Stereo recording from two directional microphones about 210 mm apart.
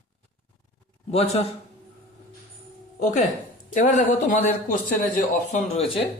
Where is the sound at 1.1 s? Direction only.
30° left (ahead or behind).